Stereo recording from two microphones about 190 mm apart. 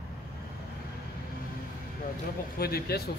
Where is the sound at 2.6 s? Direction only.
55° left (ahead or behind).